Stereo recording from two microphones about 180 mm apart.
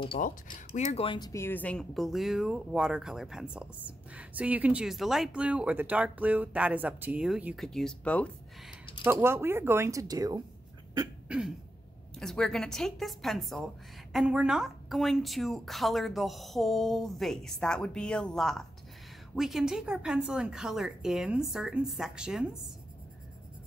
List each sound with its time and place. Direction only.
0.2 s speech: 50° left (ahead or behind)
0.7 s speech: 35° left (ahead or behind); by 8.7 s 5° left (ahead or behind)
9.0 s speech: 15° right (ahead or behind)
11.2 s throat clearing: 5° right (ahead or behind)
12.2 s speech: centre (ahead or behind)